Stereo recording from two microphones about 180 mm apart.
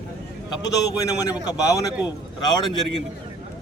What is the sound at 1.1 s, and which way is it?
A man's voice, 20° left (ahead or behind).